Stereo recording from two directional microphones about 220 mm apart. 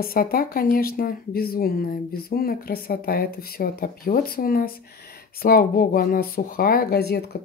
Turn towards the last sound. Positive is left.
turn(degrees=45)  # may be behind; listen again after turning